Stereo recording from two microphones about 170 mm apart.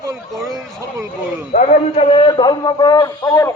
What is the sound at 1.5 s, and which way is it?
A man's voice, 35° left (ahead or behind).